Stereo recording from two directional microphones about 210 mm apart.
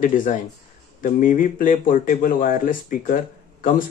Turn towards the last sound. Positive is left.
turn(degrees=40)  # may be behind; listen again after turning